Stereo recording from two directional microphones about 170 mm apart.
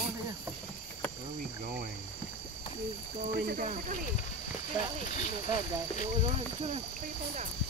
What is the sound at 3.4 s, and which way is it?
Speech, 65° right (ahead or behind).